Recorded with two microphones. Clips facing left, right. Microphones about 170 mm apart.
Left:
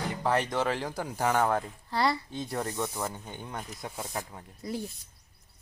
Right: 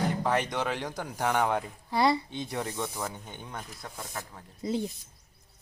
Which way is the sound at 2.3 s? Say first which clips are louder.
Left 1 dB; centre (ahead or behind).